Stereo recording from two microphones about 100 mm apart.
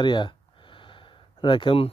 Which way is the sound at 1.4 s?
55° left (ahead or behind).